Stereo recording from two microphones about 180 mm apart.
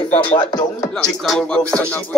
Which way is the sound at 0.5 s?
20° left (ahead or behind).